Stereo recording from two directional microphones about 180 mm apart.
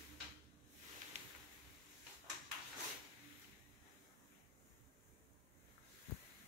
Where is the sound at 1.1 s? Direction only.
40° right (ahead or behind).